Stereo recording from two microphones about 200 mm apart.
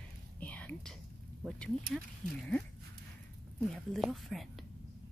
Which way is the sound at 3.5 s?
5° left (ahead or behind).